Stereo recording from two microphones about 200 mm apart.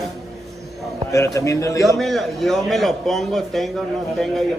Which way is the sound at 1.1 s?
15° left (ahead or behind).